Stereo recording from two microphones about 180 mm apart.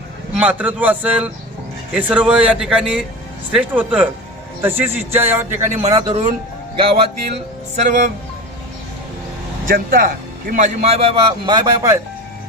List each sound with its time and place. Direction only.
0.3 s a man's voice: 10° right (ahead or behind); by 8.1 s 40° right (ahead or behind)
9.6 s speech: 55° right (ahead or behind); by 11.9 s 20° right (ahead or behind)